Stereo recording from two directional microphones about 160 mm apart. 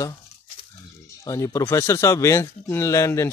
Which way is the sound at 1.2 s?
20° left (ahead or behind).